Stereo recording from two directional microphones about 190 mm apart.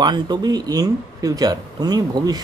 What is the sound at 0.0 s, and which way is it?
Speech, 20° right (ahead or behind).